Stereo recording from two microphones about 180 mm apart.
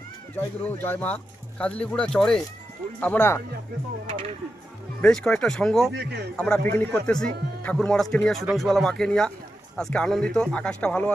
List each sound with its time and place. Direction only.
0.3 s speech: 10° left (ahead or behind)
5.0 s speech: 5° left (ahead or behind)
5.9 s a man's voice: 65° right (ahead or behind)
6.3 s speech: 5° left (ahead or behind)